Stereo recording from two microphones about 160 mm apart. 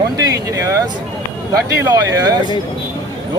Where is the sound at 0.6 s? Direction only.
20° right (ahead or behind).